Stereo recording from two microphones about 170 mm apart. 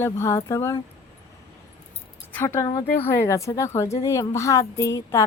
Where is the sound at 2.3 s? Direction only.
15° left (ahead or behind).